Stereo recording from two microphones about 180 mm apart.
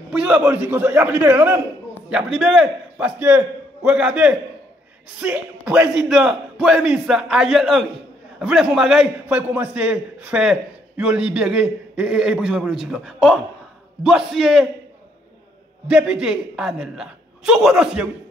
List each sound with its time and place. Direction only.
0.1 s a man's voice: 5° right (ahead or behind)
15.9 s a man's voice: 5° right (ahead or behind)